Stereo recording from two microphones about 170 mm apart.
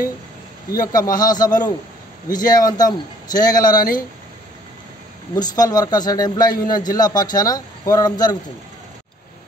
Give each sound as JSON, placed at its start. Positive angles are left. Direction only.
{"t": 0.7, "sound": "a man's voice", "side_deg": 20}
{"t": 5.3, "sound": "a man's voice", "side_deg": 20}